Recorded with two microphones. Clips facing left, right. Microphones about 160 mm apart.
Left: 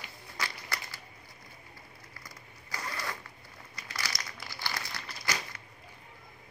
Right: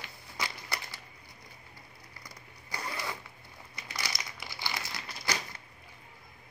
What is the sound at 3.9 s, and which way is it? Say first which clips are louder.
Crumpling: even; 15° right (ahead or behind).